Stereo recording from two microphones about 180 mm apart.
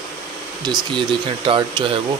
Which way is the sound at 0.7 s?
25° right (ahead or behind).